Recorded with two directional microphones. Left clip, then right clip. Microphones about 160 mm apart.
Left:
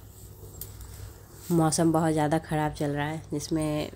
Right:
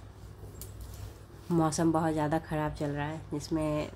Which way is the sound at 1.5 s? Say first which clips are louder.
Left 4 dB; 25° left (ahead or behind).